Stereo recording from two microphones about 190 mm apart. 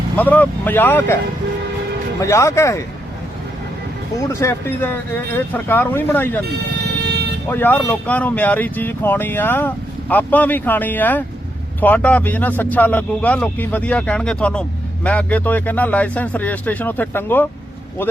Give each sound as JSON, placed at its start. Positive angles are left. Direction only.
{"t": 0.2, "sound": "speech", "side_deg": 10}
{"t": 2.2, "sound": "speech", "side_deg": 15}
{"t": 4.3, "sound": "speech", "side_deg": 15}
{"t": 7.0, "sound": "vehicle", "side_deg": -60}
{"t": 7.4, "sound": "speech", "side_deg": 10}